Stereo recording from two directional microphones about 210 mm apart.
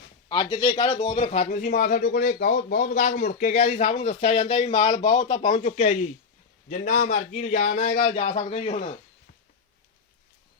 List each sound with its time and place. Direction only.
0.3 s a man's voice: 20° left (ahead or behind)
5.5 s speech: 35° left (ahead or behind)